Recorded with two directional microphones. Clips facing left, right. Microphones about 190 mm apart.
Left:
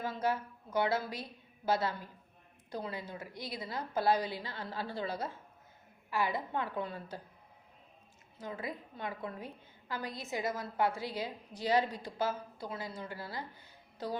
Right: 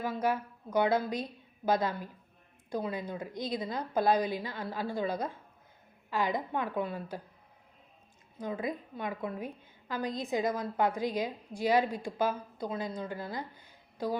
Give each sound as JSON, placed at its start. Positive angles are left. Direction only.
{"t": 0.0, "sound": "a woman's voice", "side_deg": -10}
{"t": 8.4, "sound": "a woman's voice", "side_deg": -15}